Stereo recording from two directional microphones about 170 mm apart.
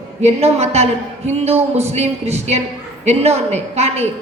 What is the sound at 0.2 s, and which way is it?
A man's voice, 40° right (ahead or behind).